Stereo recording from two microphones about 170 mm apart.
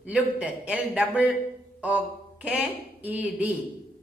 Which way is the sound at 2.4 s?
10° right (ahead or behind).